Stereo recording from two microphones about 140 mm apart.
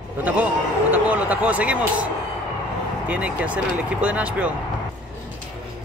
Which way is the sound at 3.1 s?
10° right (ahead or behind).